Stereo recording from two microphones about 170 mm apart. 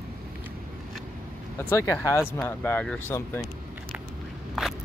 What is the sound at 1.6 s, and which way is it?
Speech, 15° left (ahead or behind).